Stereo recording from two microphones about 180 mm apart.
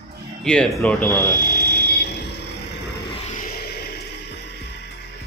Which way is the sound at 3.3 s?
55° left (ahead or behind).